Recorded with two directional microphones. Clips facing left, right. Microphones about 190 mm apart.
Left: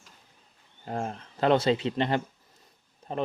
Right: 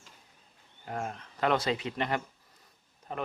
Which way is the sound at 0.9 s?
30° left (ahead or behind).